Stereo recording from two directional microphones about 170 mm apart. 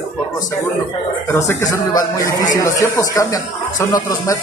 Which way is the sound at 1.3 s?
15° left (ahead or behind).